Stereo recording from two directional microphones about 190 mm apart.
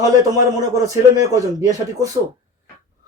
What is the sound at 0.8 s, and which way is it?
A man's voice, 15° right (ahead or behind).